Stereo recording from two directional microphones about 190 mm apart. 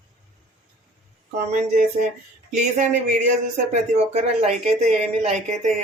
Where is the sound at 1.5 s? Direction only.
35° right (ahead or behind).